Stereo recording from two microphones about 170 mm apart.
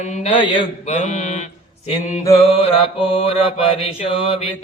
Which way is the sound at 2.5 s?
35° left (ahead or behind).